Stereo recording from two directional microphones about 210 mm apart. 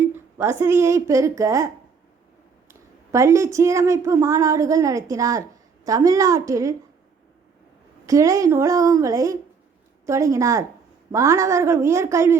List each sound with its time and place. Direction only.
0.1 s a woman's voice: 10° right (ahead or behind)
8.0 s a woman's voice: 15° right (ahead or behind)